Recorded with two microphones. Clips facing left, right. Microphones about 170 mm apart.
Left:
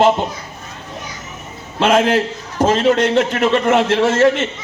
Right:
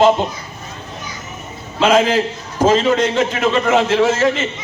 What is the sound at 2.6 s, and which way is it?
A man's voice, 60° left (ahead or behind).